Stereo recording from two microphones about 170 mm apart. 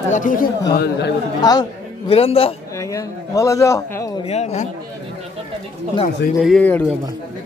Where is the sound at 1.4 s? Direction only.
25° left (ahead or behind).